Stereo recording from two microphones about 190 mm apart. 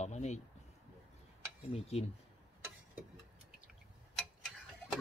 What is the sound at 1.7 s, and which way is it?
Speech, 35° left (ahead or behind).